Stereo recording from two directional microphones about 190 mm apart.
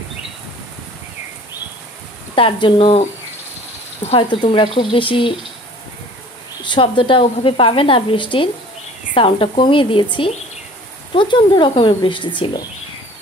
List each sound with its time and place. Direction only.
2.3 s a woman's voice: 30° left (ahead or behind)
6.6 s a woman's voice: 25° left (ahead or behind)
11.1 s a woman's voice: 25° left (ahead or behind)